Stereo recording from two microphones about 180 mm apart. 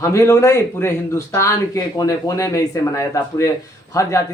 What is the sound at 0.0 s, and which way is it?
Speech, 15° left (ahead or behind).